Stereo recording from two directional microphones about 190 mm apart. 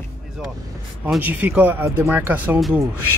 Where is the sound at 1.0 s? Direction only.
10° right (ahead or behind).